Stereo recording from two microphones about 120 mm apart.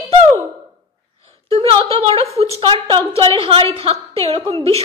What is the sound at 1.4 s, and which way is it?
A woman's voice, 50° right (ahead or behind).